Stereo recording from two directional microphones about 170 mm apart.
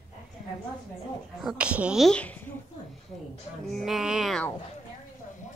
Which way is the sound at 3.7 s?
Centre (ahead or behind).